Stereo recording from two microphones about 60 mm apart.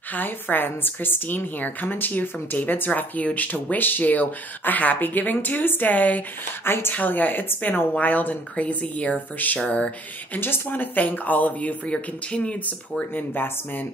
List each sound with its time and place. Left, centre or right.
0.1 s a woman's voice: left
6.6 s a woman's voice: left
7.0 s speech: left
10.4 s speech: left; by 12.7 s centre
13.1 s a woman's voice: left